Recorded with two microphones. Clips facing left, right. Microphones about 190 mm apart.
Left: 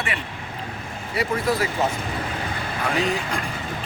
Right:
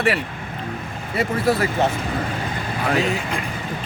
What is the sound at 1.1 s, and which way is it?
Speech, 55° right (ahead or behind).